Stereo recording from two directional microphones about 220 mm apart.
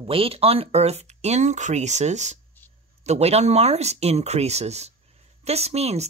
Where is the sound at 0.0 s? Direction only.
25° right (ahead or behind).